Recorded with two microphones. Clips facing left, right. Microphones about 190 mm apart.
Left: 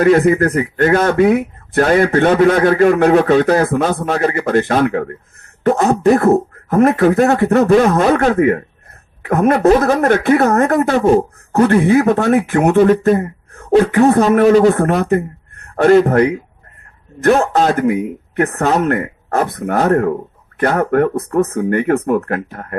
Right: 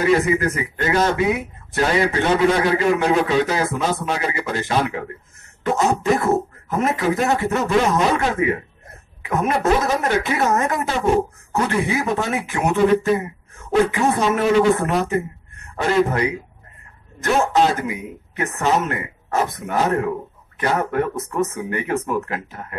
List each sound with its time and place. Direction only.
0.0 s a man's voice: 55° left (ahead or behind)